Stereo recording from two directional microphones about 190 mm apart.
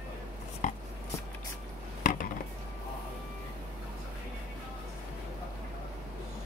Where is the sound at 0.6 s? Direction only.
40° left (ahead or behind).